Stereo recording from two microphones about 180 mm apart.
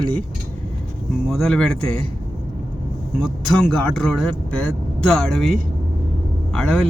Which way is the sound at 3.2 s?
Centre (ahead or behind).